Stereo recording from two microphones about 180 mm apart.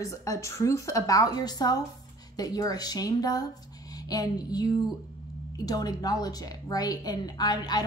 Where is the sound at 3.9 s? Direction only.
20° left (ahead or behind).